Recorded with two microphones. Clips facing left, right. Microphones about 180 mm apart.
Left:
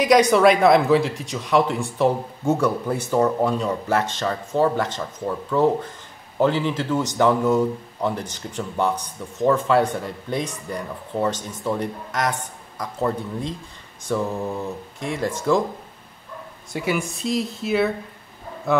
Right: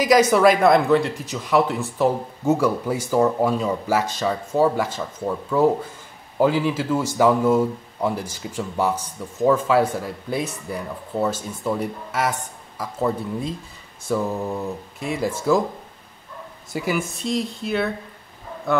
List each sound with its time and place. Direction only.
0.0 s speech: centre (ahead or behind)
16.7 s speech: centre (ahead or behind)